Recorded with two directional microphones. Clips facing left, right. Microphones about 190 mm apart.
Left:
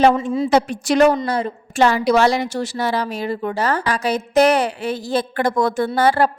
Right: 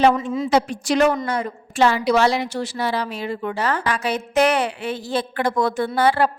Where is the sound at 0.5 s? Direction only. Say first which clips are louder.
Left 2 dB; 50° left (ahead or behind).